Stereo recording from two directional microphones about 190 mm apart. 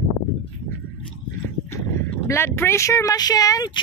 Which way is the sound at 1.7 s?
15° left (ahead or behind).